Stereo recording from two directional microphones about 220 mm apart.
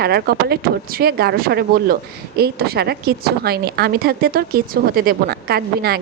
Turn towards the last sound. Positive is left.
turn(degrees=-45)  # may be behind; listen again after turning